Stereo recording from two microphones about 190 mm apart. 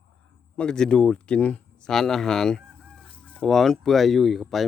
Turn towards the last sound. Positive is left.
turn(degrees=0)  # may be behind; listen again after turning